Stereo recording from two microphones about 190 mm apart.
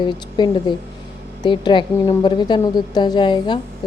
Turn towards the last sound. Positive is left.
turn(degrees=25)  # may be behind; listen again after turning